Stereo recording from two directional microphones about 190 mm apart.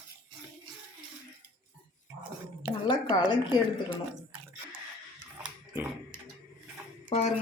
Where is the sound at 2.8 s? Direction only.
20° left (ahead or behind).